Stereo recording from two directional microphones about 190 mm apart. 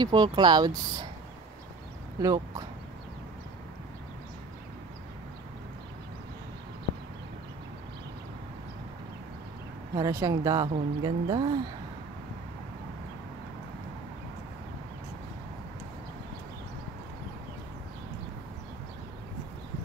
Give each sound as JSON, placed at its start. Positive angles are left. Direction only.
{"t": 0.0, "sound": "speech", "side_deg": -20}
{"t": 2.2, "sound": "speech", "side_deg": -20}
{"t": 9.9, "sound": "speech", "side_deg": -20}